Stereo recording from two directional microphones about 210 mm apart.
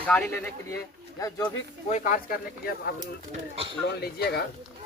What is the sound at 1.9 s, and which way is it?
Speech, 35° left (ahead or behind).